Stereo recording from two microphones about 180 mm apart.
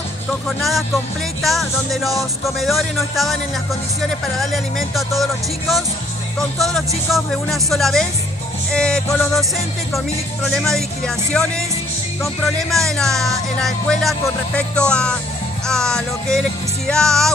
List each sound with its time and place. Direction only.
0.3 s speech: centre (ahead or behind)
4.4 s speech: centre (ahead or behind)
7.1 s speech: centre (ahead or behind)
15.6 s music: 5° left (ahead or behind)